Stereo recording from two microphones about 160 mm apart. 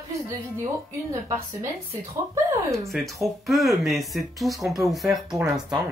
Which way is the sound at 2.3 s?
20° right (ahead or behind).